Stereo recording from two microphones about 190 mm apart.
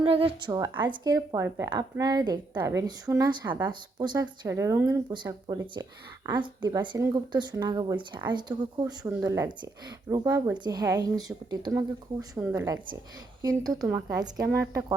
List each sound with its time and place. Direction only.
0.0 s a woman's voice: 30° right (ahead or behind)